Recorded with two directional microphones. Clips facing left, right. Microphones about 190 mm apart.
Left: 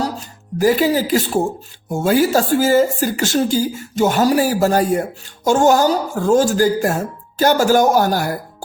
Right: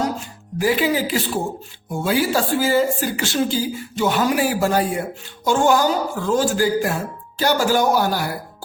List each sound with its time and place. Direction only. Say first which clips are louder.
0.6 s speech: left 4 dB; 40° left (ahead or behind)